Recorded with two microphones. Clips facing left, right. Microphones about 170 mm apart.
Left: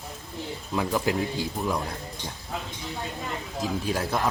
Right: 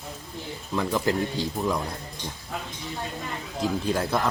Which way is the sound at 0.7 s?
10° left (ahead or behind).